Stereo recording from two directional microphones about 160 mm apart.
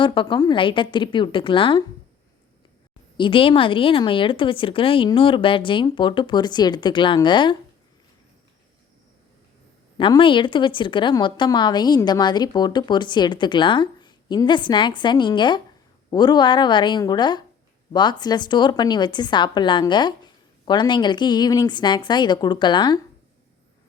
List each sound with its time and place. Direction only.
0.0 s speech: 30° left (ahead or behind)
3.2 s speech: 35° left (ahead or behind)
10.0 s a woman's voice: 30° left (ahead or behind)